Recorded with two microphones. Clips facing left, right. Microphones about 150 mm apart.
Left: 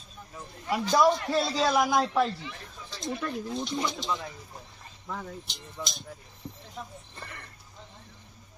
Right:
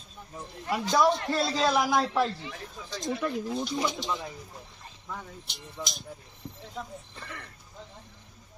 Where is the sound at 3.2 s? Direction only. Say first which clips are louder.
Right 2 dB; 10° right (ahead or behind).